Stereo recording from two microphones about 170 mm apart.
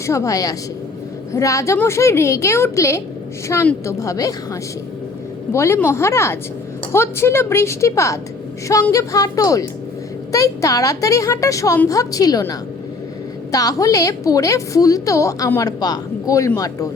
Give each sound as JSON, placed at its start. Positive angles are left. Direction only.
{"t": 0.0, "sound": "a woman's voice", "side_deg": 15}
{"t": 5.5, "sound": "a woman's voice", "side_deg": 15}